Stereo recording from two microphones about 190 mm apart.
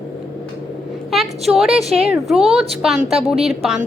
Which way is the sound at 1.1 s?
Centre (ahead or behind).